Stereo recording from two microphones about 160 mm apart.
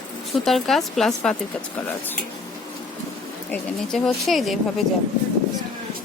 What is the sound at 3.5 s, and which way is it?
Speech, centre (ahead or behind).